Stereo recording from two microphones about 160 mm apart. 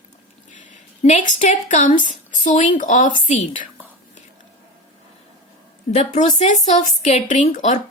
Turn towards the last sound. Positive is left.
turn(degrees=50)  # may be behind; listen again after turning